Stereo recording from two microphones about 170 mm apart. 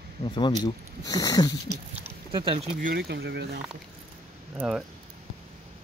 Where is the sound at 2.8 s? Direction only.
65° right (ahead or behind).